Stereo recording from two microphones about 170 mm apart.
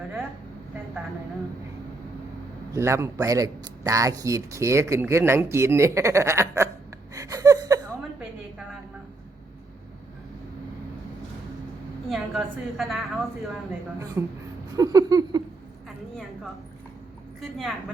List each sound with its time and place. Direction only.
2.7 s speech: 15° right (ahead or behind)
7.1 s a sound: 20° right (ahead or behind)
12.0 s a woman's voice: centre (ahead or behind)
14.2 s speech: 15° right (ahead or behind)
14.8 s a sound: 20° right (ahead or behind)
17.4 s a woman's voice: centre (ahead or behind)